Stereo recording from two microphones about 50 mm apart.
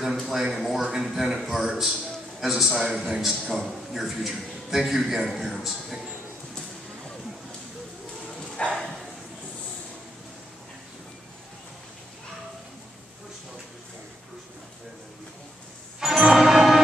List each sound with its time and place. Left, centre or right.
0.3 s a man's voice: centre
8.6 s a sound: centre
16.0 s music: centre